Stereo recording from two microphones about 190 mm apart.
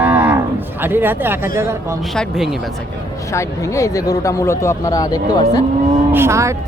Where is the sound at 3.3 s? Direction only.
15° left (ahead or behind).